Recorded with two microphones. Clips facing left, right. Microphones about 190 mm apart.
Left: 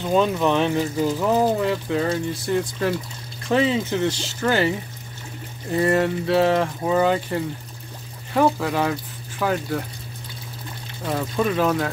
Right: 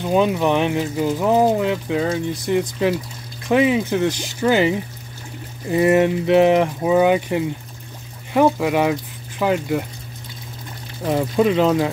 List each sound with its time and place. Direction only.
0.0 s speech: 15° right (ahead or behind)
11.1 s speech: 20° right (ahead or behind)